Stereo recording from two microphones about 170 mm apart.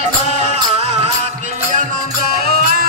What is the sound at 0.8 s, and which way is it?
Music, 40° right (ahead or behind).